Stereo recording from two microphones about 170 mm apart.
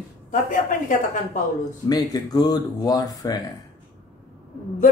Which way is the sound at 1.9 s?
20° left (ahead or behind).